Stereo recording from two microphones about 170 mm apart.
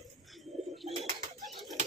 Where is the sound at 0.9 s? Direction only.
30° right (ahead or behind).